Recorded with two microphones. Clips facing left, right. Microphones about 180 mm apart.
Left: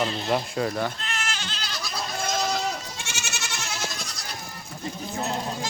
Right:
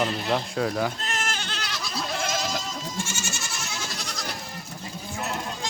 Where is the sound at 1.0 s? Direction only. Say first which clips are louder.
Right 2 dB; 45° right (ahead or behind); by 1.7 s 60° right (ahead or behind).